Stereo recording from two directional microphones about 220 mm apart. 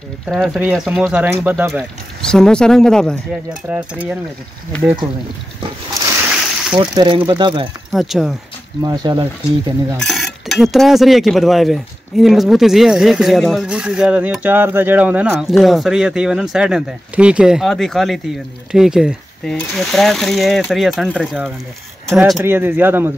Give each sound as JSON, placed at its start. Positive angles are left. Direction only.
{"t": 0.3, "sound": "cutlery", "side_deg": 0}
{"t": 1.4, "sound": "speech", "side_deg": -10}
{"t": 2.3, "sound": "cutlery", "side_deg": 5}
{"t": 3.6, "sound": "speech", "side_deg": -5}
{"t": 4.8, "sound": "speech", "side_deg": -20}
{"t": 5.9, "sound": "a sound", "side_deg": -15}
{"t": 6.8, "sound": "speech", "side_deg": -20}
{"t": 7.9, "sound": "cutlery", "side_deg": 0}
{"t": 8.8, "sound": "speech", "side_deg": -20}
{"t": 9.9, "sound": "cutlery", "side_deg": 0}
{"t": 18.7, "sound": "speech", "side_deg": 0}
{"t": 19.5, "sound": "cutlery", "side_deg": 0}
{"t": 22.0, "sound": "speech", "side_deg": 0}